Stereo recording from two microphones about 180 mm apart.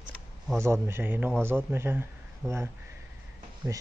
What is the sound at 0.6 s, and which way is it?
Speech, 15° right (ahead or behind).